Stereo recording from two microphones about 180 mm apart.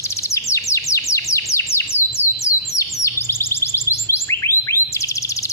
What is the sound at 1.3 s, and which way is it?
Chirp, 15° left (ahead or behind).